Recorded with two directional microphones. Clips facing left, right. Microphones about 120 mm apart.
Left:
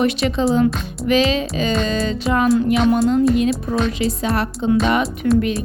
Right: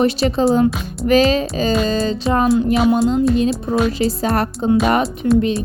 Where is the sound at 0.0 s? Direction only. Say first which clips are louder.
Right 2 dB; 35° right (ahead or behind).